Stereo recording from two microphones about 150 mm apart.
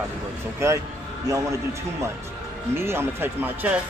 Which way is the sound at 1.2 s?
20° right (ahead or behind).